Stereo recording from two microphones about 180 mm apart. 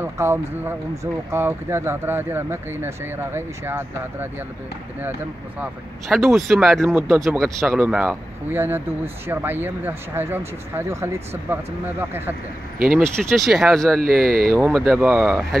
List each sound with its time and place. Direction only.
0.0 s speech: 15° right (ahead or behind)
5.6 s speech: centre (ahead or behind)
6.9 s speech: 15° right (ahead or behind)
7.2 s speech: centre (ahead or behind)
12.7 s speech: 55° right (ahead or behind)
13.3 s speech: centre (ahead or behind)
14.0 s speech: 55° right (ahead or behind)
14.7 s speech: centre (ahead or behind)